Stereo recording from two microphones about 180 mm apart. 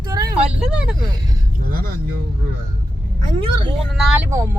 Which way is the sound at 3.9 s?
Centre (ahead or behind).